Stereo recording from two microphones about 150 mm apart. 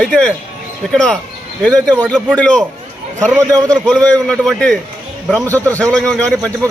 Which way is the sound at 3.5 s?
25° right (ahead or behind).